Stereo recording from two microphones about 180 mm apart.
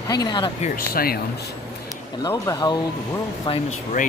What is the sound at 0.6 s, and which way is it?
Speech, 55° left (ahead or behind).